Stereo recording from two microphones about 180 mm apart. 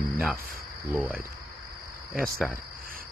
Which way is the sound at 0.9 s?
10° right (ahead or behind).